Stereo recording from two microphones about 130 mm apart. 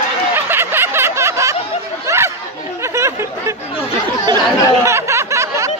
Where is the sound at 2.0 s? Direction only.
20° right (ahead or behind).